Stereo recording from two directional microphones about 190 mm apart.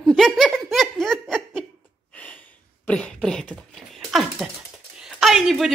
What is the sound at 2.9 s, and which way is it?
A woman's voice, 5° left (ahead or behind).